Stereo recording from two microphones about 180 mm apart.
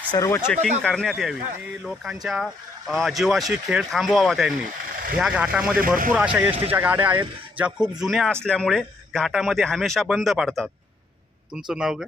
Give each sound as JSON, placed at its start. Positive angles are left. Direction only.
{"t": 0.1, "sound": "speech", "side_deg": 15}
{"t": 0.8, "sound": "speech", "side_deg": 5}
{"t": 11.7, "sound": "speech", "side_deg": -5}